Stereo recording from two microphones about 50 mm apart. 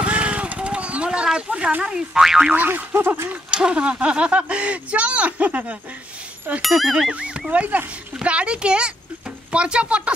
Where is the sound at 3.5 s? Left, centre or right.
Centre.